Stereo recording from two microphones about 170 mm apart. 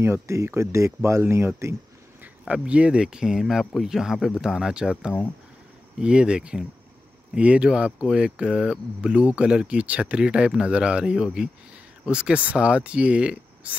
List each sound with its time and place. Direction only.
0.0 s speech: 15° right (ahead or behind)